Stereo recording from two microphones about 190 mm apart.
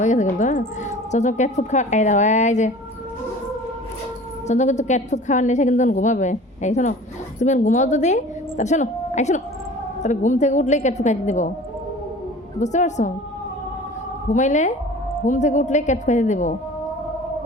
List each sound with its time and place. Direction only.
0.0 s a woman's voice: 40° left (ahead or behind)
4.4 s a woman's voice: 40° left (ahead or behind)
12.5 s a woman's voice: 40° left (ahead or behind)
14.3 s a woman's voice: 40° left (ahead or behind)